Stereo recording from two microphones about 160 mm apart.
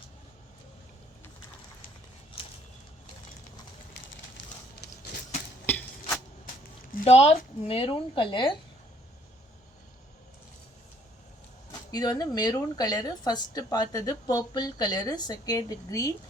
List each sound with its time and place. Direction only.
5.6 s a sound: 10° left (ahead or behind)
7.0 s speech: 35° left (ahead or behind)
11.7 s speech: 25° left (ahead or behind)